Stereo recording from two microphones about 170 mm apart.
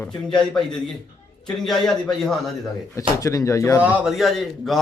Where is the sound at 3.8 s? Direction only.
5° right (ahead or behind).